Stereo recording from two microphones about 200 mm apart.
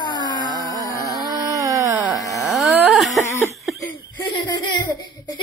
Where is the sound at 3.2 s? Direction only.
15° left (ahead or behind).